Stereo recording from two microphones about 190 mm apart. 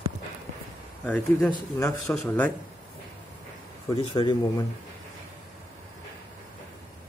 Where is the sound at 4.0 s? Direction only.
25° left (ahead or behind).